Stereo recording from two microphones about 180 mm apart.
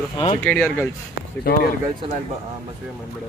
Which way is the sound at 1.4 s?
55° left (ahead or behind).